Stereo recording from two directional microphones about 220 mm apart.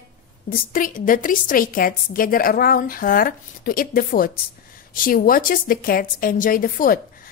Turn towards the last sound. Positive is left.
turn(degrees=40)  # may be behind; listen again after turning